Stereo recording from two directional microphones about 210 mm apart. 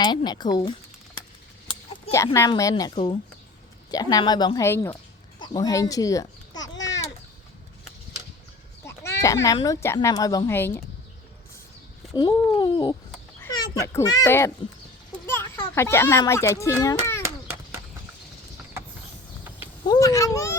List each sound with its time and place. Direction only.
0.0 s speech: 20° left (ahead or behind)
2.1 s speech: 15° left (ahead or behind)
2.9 s speech: 25° left (ahead or behind)
6.7 s babbling: 60° left (ahead or behind)
8.8 s speech: 10° left (ahead or behind)
12.1 s speech: 20° left (ahead or behind)
13.4 s a sound: 20° left (ahead or behind)
13.7 s speech: 15° left (ahead or behind)
15.7 s a child's voice: 10° left (ahead or behind)
18.8 s a sound: 10° right (ahead or behind)
19.9 s a sound: 15° left (ahead or behind)